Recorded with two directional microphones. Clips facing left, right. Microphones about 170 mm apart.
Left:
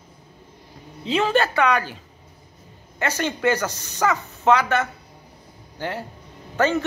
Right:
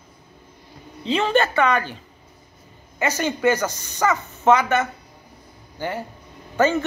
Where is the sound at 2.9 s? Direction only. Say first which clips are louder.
Right 2 dB; 5° right (ahead or behind).